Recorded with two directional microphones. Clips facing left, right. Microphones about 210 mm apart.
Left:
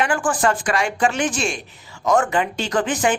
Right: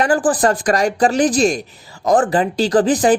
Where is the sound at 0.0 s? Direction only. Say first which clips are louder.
Right 5 dB; 35° right (ahead or behind).